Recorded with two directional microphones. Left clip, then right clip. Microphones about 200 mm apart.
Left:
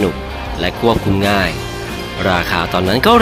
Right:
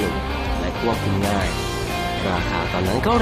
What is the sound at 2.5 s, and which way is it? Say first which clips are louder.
Speech: left 7 dB; 20° left (ahead or behind).